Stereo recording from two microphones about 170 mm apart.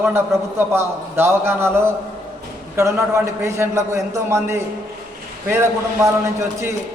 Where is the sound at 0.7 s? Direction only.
15° right (ahead or behind).